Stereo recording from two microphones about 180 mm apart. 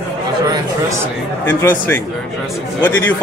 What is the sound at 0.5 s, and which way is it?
Speech, 15° right (ahead or behind).